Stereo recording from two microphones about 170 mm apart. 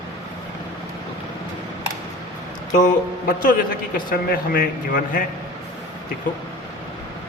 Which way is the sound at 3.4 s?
55° left (ahead or behind).